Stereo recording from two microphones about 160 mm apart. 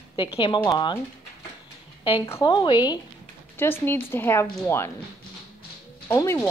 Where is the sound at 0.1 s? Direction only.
35° left (ahead or behind).